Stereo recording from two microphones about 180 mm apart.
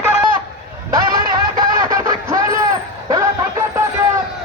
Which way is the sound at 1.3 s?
20° right (ahead or behind).